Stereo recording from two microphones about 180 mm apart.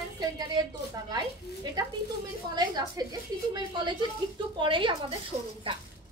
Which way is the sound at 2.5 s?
20° right (ahead or behind).